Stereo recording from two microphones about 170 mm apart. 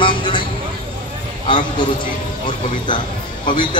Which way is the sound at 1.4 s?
30° left (ahead or behind).